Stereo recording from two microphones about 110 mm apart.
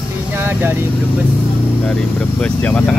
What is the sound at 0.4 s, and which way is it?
Speech, 20° right (ahead or behind).